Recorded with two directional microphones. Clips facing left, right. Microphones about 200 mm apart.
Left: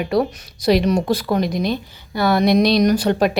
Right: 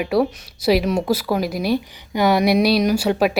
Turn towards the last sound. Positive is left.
turn(degrees=-5)  # may be behind; listen again after turning